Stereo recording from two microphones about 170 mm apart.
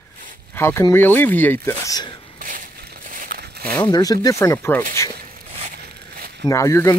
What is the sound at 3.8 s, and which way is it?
Speech, 25° left (ahead or behind).